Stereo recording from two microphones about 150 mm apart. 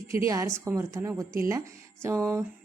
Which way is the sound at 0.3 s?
20° right (ahead or behind).